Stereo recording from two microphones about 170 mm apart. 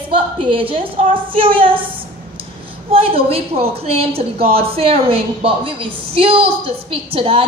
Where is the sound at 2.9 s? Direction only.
35° right (ahead or behind).